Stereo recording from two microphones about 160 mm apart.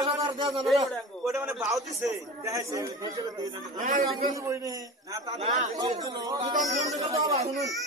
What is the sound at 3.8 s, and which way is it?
Speech, 55° right (ahead or behind).